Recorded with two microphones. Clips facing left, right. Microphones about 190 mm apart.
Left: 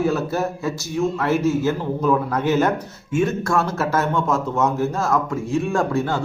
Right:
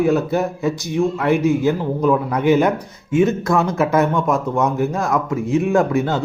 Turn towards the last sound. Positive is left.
turn(degrees=-20)  # may be behind; listen again after turning